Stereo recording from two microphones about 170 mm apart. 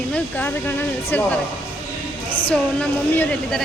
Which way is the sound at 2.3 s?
30° left (ahead or behind).